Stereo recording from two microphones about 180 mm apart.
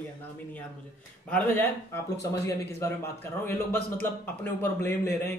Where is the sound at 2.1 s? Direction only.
70° left (ahead or behind).